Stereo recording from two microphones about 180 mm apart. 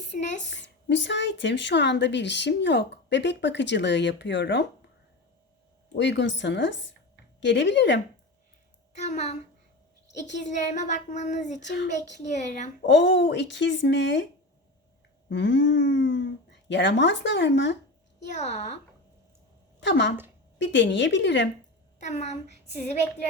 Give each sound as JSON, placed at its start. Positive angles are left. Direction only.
{"t": 0.5, "sound": "speech", "side_deg": 85}
{"t": 5.9, "sound": "speech", "side_deg": 80}
{"t": 9.0, "sound": "speech", "side_deg": 40}
{"t": 11.6, "sound": "speech", "side_deg": 80}
{"t": 15.3, "sound": "speech", "side_deg": 90}
{"t": 18.3, "sound": "speech", "side_deg": 40}
{"t": 19.8, "sound": "speech", "side_deg": 80}
{"t": 22.0, "sound": "speech", "side_deg": 40}